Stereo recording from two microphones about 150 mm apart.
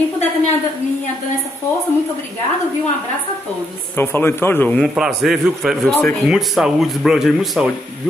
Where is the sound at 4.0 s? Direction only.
15° left (ahead or behind).